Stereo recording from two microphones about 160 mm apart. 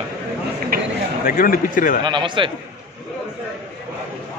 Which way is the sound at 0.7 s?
70° right (ahead or behind).